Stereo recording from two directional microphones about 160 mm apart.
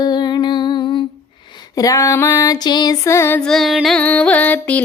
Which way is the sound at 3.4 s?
Centre (ahead or behind).